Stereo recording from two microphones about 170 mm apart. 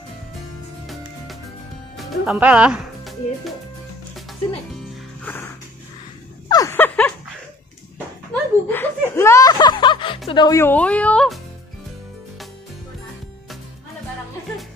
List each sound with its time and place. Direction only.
0.8 s music: centre (ahead or behind)
2.0 s speech: centre (ahead or behind)
6.5 s a sound: 15° left (ahead or behind)
8.6 s music: 10° left (ahead or behind)
10.6 s a woman's voice: 10° left (ahead or behind)